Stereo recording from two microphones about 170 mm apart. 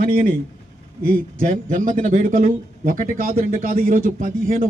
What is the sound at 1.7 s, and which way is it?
Speech, 50° right (ahead or behind).